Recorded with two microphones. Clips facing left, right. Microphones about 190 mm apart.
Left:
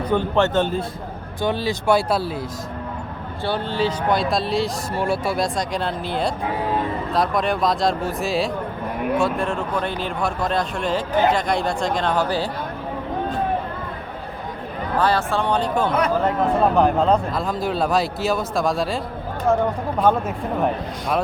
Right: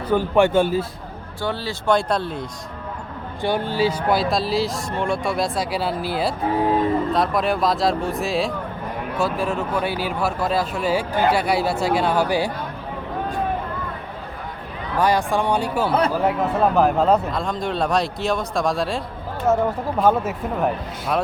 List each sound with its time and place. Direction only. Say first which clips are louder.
0.1 s speech: right 3 dB; 10° right (ahead or behind)
1.4 s speech: left 4 dB; 15° left (ahead or behind)
3.4 s speech: right 2 dB; 15° right (ahead or behind)
14.9 s speech: right 1 dB; 15° right (ahead or behind)
15.9 s speech: right 1 dB; 30° right (ahead or behind)
16.2 s speech: left 1 dB; 5° right (ahead or behind)